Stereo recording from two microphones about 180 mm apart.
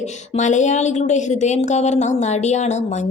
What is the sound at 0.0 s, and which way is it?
A woman's voice, 40° left (ahead or behind).